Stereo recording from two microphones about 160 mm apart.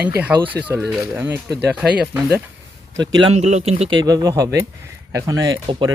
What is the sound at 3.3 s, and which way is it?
Speech, 45° right (ahead or behind).